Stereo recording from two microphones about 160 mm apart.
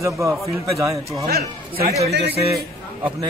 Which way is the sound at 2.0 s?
90° right.